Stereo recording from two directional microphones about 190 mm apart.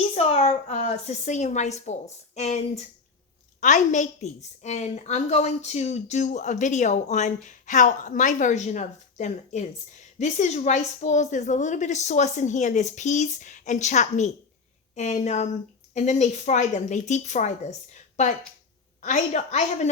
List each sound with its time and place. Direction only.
0.2 s a woman's voice: 35° left (ahead or behind)